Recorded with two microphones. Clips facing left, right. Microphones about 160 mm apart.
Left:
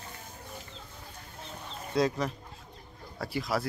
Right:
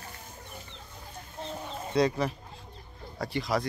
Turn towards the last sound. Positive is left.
turn(degrees=5)  # may be behind; listen again after turning